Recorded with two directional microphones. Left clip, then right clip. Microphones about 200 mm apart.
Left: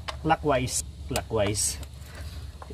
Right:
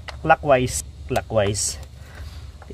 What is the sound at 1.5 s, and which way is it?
Speech, 45° right (ahead or behind).